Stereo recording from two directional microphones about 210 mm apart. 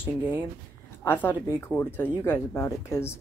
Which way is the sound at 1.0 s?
10° left (ahead or behind).